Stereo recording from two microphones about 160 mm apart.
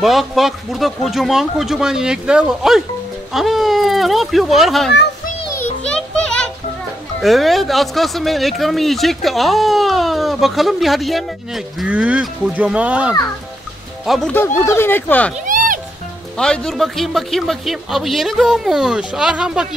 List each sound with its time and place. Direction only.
0.0 s speech: centre (ahead or behind)
5.9 s music: 5° left (ahead or behind)
7.2 s speech: centre (ahead or behind)
14.6 s speech: 15° left (ahead or behind)
15.4 s music: 55° right (ahead or behind)
16.3 s speech: 5° left (ahead or behind)